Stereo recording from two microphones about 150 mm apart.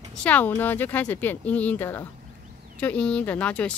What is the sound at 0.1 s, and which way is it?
Speech, 10° left (ahead or behind).